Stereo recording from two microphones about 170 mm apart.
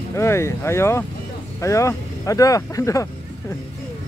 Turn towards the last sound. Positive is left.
turn(degrees=20)  # may be behind; listen again after turning